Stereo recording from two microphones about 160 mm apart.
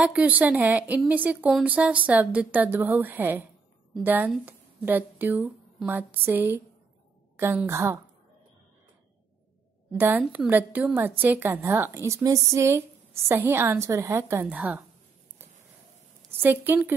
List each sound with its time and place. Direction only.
0.0 s a woman's voice: 10° right (ahead or behind)
9.9 s a woman's voice: 10° right (ahead or behind)
16.3 s a woman's voice: 15° right (ahead or behind)